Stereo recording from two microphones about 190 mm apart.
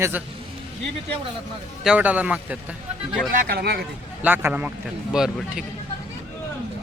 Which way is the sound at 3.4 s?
50° right (ahead or behind).